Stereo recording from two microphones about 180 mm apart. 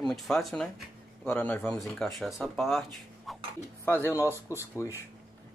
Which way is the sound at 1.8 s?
Centre (ahead or behind).